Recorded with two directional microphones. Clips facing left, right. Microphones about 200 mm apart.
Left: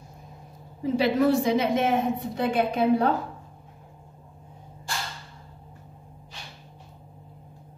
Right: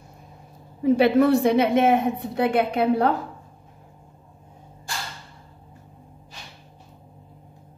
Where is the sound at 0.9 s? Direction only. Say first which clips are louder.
Right 3 dB; 60° right (ahead or behind).